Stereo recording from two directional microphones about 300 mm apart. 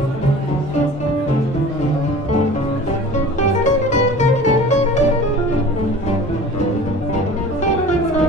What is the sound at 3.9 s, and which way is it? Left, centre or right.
Music, left.